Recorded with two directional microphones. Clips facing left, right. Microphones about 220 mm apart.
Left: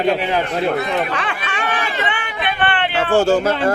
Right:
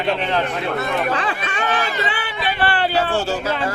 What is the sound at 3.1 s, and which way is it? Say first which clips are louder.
Speech: left 7 dB; 50° left (ahead or behind).